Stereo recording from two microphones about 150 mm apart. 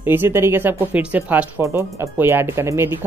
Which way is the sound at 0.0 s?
15° right (ahead or behind).